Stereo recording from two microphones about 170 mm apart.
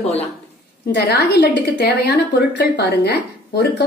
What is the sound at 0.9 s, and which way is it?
A woman's voice, 70° left (ahead or behind).